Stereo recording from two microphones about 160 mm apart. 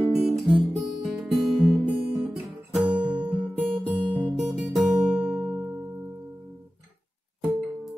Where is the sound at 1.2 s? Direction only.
Centre (ahead or behind).